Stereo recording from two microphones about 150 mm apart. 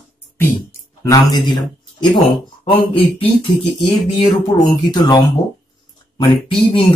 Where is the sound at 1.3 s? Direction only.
30° left (ahead or behind).